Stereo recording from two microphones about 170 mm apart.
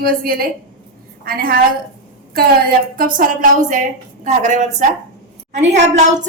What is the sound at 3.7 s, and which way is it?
A woman's voice, 45° right (ahead or behind).